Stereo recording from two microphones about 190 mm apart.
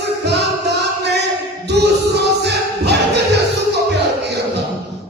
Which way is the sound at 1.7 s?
60° right (ahead or behind).